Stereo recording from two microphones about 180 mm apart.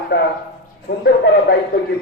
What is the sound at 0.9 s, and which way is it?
Speech, 65° left (ahead or behind).